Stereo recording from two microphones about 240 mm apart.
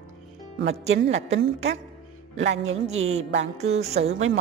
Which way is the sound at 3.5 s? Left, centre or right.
Right.